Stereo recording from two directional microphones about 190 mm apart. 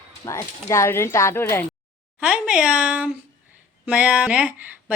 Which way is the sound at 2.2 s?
5° right (ahead or behind).